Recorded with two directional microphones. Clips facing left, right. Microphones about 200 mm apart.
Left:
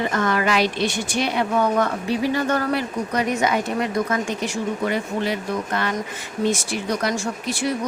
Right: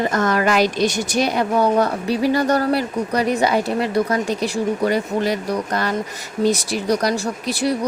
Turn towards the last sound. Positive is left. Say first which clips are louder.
# right 3 dB
turn(degrees=-35)  # may be behind; listen again after turning